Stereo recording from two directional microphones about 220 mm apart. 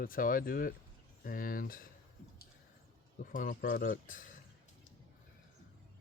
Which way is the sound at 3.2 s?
35° left (ahead or behind).